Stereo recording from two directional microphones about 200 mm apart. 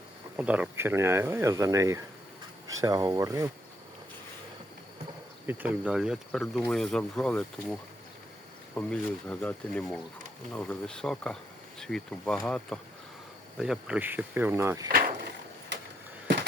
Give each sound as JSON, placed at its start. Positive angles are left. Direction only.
{"t": 0.3, "sound": "speech", "side_deg": -5}
{"t": 5.5, "sound": "speech", "side_deg": -10}
{"t": 16.2, "sound": "a sound", "side_deg": -60}